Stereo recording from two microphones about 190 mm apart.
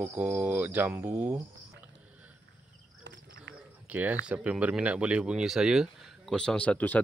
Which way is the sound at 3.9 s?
10° right (ahead or behind).